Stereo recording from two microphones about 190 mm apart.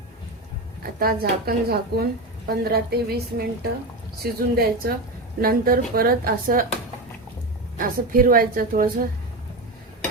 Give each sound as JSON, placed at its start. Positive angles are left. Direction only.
{"t": 0.8, "sound": "a woman's voice", "side_deg": -50}
{"t": 7.8, "sound": "speech", "side_deg": -50}